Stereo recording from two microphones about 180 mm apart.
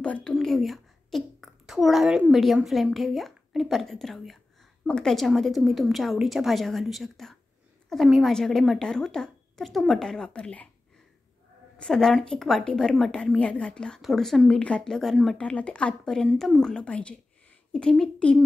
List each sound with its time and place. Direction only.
0.0 s a woman's voice: 5° left (ahead or behind)
11.8 s a woman's voice: centre (ahead or behind)